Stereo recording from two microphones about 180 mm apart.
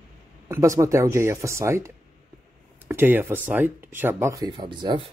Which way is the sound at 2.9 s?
10° right (ahead or behind).